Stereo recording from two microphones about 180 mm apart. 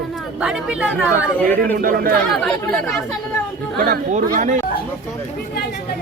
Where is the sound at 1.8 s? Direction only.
55° right (ahead or behind).